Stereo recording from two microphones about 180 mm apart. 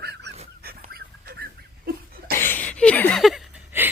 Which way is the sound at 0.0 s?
65° right (ahead or behind).